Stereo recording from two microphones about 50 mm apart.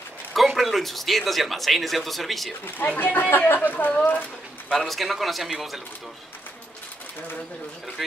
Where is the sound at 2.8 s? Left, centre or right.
Left.